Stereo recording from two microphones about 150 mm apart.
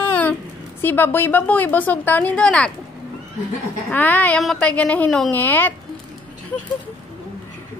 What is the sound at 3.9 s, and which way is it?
A woman's voice, 10° left (ahead or behind).